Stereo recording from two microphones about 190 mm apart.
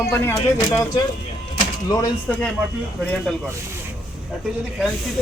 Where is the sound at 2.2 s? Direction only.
5° left (ahead or behind).